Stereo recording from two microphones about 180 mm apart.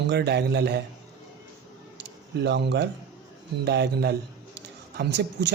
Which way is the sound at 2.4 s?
70° right (ahead or behind).